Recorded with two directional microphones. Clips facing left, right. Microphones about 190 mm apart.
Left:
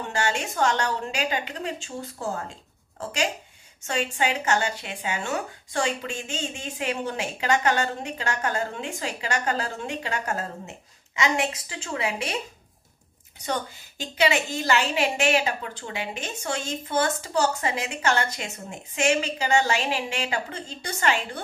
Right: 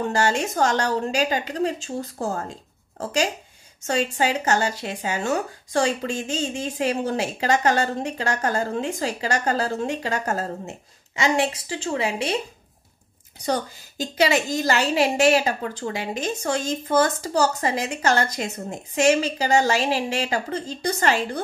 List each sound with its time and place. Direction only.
0.1 s a woman's voice: 40° right (ahead or behind)
13.5 s a woman's voice: 40° right (ahead or behind)